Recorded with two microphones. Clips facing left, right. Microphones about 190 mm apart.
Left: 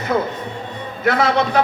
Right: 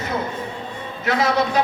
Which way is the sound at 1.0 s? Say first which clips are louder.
Left 3 dB; 55° left (ahead or behind).